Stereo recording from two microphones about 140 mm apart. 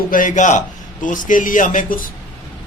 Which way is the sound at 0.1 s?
65° left (ahead or behind).